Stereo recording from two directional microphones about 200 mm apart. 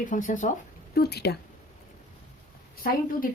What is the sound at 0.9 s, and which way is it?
Speech, 55° left (ahead or behind).